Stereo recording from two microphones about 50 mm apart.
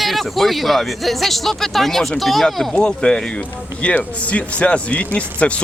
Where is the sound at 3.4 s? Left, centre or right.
Left.